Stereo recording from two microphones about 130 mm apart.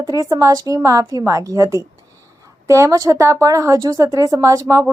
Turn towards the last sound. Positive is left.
turn(degrees=-25)  # may be behind; listen again after turning